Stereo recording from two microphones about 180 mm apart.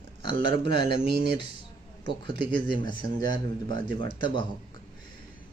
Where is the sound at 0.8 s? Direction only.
70° right (ahead or behind).